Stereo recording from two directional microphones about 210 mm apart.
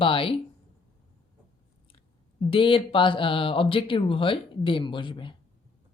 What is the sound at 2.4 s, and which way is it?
Speech, 25° left (ahead or behind).